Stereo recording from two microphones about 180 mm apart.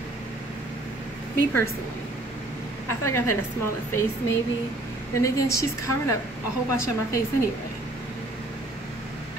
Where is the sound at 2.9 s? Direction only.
15° left (ahead or behind).